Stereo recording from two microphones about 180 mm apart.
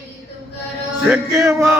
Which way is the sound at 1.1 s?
15° right (ahead or behind).